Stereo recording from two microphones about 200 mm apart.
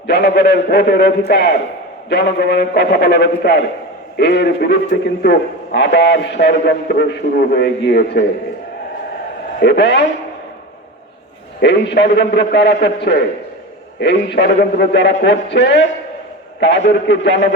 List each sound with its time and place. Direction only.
0.1 s a man's voice: 55° left (ahead or behind)
9.6 s a man's voice: 55° left (ahead or behind)
11.6 s a man's voice: 60° left (ahead or behind)